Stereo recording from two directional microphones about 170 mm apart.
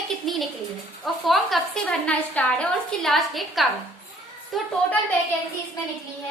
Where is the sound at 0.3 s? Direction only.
Centre (ahead or behind).